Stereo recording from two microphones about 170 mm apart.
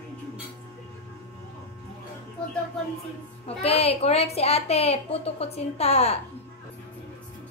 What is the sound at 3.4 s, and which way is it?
A woman's voice, 35° left (ahead or behind).